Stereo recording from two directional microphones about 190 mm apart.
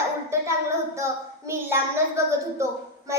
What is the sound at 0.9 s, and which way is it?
Child singing, 15° right (ahead or behind).